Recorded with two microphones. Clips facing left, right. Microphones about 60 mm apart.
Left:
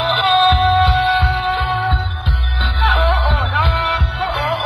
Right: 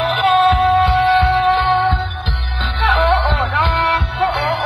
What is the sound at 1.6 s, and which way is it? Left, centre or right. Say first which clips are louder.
Music: right 4 dB; right.